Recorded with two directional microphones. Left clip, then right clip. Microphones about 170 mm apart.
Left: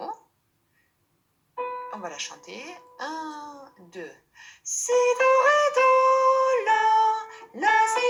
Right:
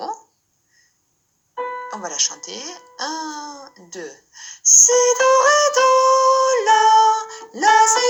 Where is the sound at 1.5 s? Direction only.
40° right (ahead or behind).